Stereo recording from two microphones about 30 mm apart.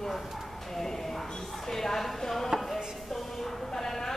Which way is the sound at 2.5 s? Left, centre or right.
Centre.